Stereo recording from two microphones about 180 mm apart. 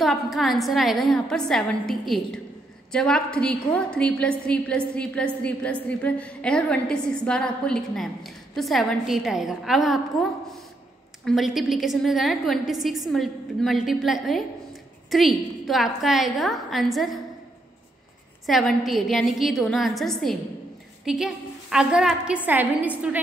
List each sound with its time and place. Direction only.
0.0 s a woman's voice: centre (ahead or behind)
11.2 s a woman's voice: centre (ahead or behind)
18.5 s a woman's voice: centre (ahead or behind)